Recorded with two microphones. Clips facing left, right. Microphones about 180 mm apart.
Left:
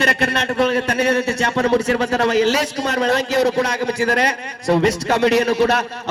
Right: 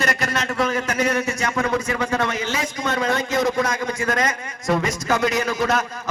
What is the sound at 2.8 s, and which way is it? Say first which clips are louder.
Speech: left 2 dB; 35° left (ahead or behind).